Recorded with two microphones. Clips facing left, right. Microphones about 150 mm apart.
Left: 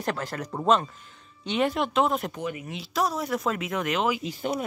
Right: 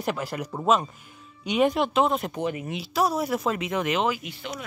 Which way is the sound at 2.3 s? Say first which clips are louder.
Right 4 dB; 25° right (ahead or behind).